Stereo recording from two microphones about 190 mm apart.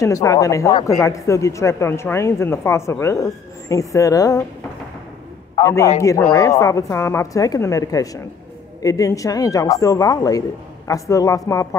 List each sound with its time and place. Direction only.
0.0 s speech: 15° left (ahead or behind)
5.6 s a man's voice: 15° left (ahead or behind)